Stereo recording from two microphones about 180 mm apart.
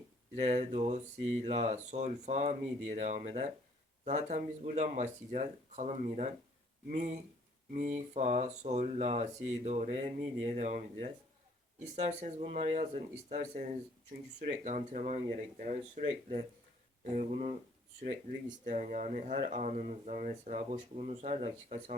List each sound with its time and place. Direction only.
0.3 s speech: 40° right (ahead or behind)
17.0 s speech: 40° right (ahead or behind)
18.6 s speech: 45° right (ahead or behind)